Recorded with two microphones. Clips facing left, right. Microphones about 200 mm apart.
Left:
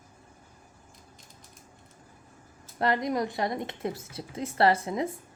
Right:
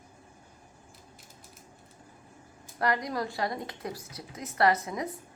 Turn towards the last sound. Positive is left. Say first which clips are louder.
# left 2 dB
turn(degrees=25)  # may be behind; listen again after turning